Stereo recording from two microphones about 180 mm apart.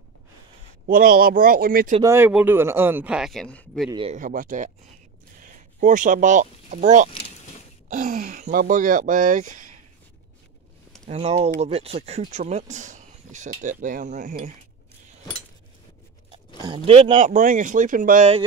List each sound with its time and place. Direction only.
0.8 s speech: 50° right (ahead or behind)
2.0 s speech: 10° right (ahead or behind); by 3.9 s 5° left (ahead or behind)
3.9 s speech: 30° right (ahead or behind)
4.2 s speech: 50° right (ahead or behind)
11.1 s speech: 35° right (ahead or behind)
16.6 s speech: 30° right (ahead or behind); by 18.3 s 50° right (ahead or behind)